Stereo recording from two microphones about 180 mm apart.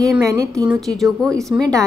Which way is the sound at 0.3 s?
20° right (ahead or behind).